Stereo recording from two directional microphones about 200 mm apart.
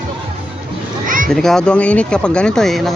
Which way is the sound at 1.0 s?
40° right (ahead or behind).